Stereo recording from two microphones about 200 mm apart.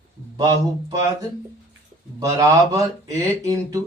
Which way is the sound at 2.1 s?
15° right (ahead or behind).